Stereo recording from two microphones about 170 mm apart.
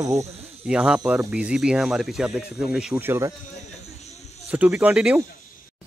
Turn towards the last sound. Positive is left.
turn(degrees=-5)  # may be behind; listen again after turning